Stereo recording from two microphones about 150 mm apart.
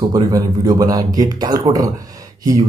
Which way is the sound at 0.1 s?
25° right (ahead or behind).